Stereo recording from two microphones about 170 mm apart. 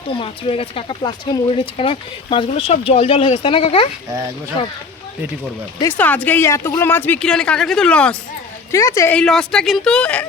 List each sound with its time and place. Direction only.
0.1 s speech: 30° left (ahead or behind)
6.0 s speech: 10° left (ahead or behind)
8.7 s speech: 20° left (ahead or behind)
9.1 s speech: 5° left (ahead or behind)